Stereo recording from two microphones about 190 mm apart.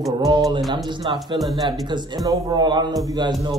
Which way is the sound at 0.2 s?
20° right (ahead or behind).